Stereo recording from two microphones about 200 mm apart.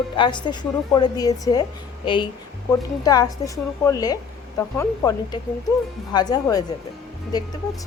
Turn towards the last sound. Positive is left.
turn(degrees=20)  # may be behind; listen again after turning